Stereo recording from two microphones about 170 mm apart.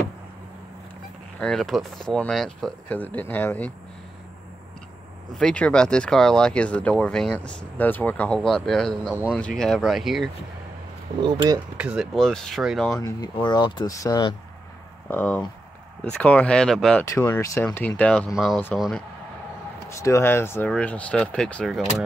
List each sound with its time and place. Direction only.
1.4 s speech: centre (ahead or behind)
5.4 s speech: 5° left (ahead or behind)
11.2 s speech: 25° right (ahead or behind)
11.7 s speech: 5° right (ahead or behind)
12.9 s speech: 20° left (ahead or behind)
15.0 s speech: 10° left (ahead or behind)
17.0 s speech: 15° left (ahead or behind)
19.9 s speech: 15° left (ahead or behind); by 22.0 s centre (ahead or behind)